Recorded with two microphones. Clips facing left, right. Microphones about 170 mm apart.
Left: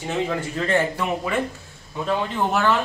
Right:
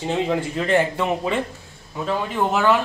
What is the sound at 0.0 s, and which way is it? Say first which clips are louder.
Speech: right 3 dB; 20° right (ahead or behind).